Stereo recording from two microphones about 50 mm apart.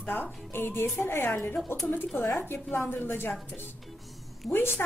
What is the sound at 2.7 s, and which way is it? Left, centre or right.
Speech, left.